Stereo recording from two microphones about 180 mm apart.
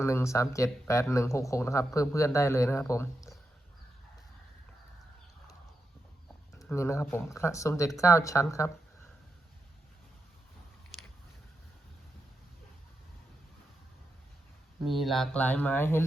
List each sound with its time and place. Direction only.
0.0 s speech: 15° left (ahead or behind)
6.6 s speech: 15° left (ahead or behind)
14.8 s speech: centre (ahead or behind)